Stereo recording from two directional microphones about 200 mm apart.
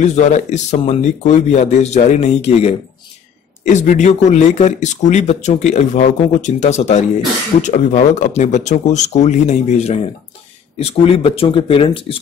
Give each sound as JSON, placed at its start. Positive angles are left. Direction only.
{"t": 0.0, "sound": "speech", "side_deg": 35}